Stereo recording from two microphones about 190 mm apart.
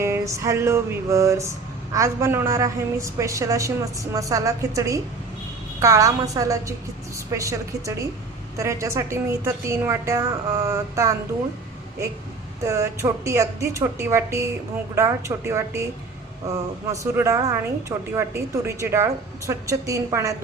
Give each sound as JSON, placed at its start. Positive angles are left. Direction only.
{"t": 0.0, "sound": "a woman's voice", "side_deg": -15}
{"t": 12.6, "sound": "a woman's voice", "side_deg": -15}